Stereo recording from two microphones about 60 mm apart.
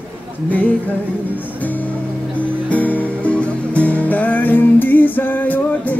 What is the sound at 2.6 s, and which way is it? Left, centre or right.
Music, left.